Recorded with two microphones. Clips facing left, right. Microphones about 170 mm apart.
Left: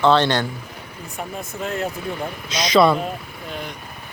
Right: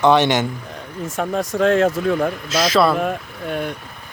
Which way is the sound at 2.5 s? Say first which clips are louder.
Left 2 dB; 5° right (ahead or behind).